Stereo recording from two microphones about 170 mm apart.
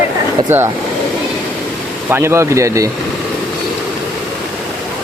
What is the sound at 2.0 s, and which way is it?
Speech, 15° right (ahead or behind).